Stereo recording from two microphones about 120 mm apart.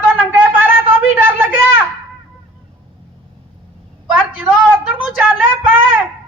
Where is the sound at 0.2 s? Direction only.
15° right (ahead or behind).